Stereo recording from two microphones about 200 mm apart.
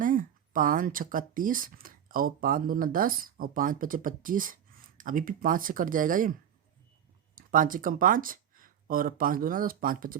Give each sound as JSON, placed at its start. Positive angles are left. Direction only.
{"t": 0.0, "sound": "speech", "side_deg": -40}
{"t": 7.3, "sound": "speech", "side_deg": -45}